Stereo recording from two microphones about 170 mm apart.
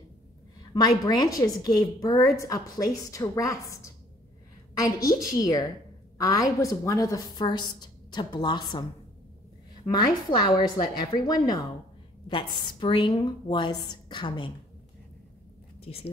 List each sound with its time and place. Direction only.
0.7 s a woman's voice: 25° left (ahead or behind)
9.8 s a woman's voice: 30° left (ahead or behind)
15.8 s speech: 35° left (ahead or behind)